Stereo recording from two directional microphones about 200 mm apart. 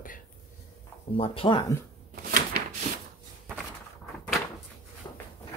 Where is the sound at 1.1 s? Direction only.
25° left (ahead or behind).